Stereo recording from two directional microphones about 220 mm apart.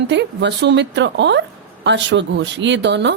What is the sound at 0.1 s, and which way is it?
A woman's voice, 50° right (ahead or behind).